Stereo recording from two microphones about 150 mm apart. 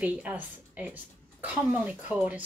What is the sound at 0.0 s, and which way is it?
Speech, 10° right (ahead or behind).